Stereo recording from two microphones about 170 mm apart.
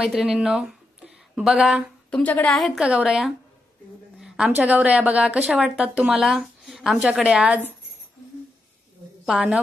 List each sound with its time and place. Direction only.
0.0 s speech: 5° right (ahead or behind)
4.6 s speech: 5° right (ahead or behind)
9.2 s a woman's voice: 5° right (ahead or behind)